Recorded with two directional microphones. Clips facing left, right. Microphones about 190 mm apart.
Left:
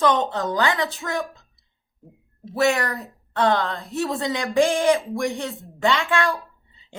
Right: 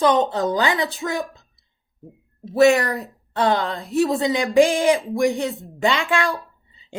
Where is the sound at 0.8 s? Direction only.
10° right (ahead or behind).